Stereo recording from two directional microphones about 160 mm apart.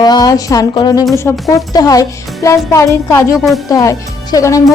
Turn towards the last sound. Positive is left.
turn(degrees=20)  # may be behind; listen again after turning